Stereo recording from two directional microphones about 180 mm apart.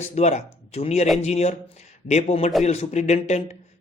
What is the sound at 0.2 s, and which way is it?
Speech, 40° left (ahead or behind).